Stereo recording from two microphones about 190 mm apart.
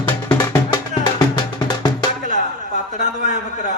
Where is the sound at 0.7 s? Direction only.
25° left (ahead or behind).